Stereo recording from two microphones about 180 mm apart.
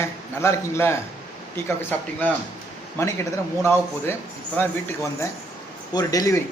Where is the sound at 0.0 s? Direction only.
15° left (ahead or behind).